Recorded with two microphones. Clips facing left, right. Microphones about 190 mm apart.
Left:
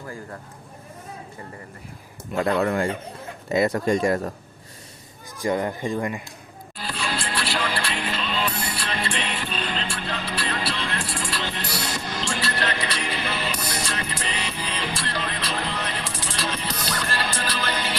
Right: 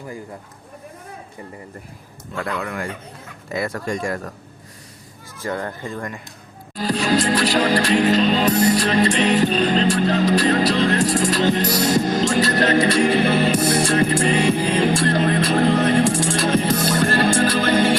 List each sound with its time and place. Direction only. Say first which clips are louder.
0.0 s speech: right 3 dB; 15° right (ahead or behind)
2.3 s speech: left 5 dB; 25° left (ahead or behind)
5.4 s speech: left 3 dB; 15° left (ahead or behind)
6.7 s music: right 11 dB; 40° right (ahead or behind)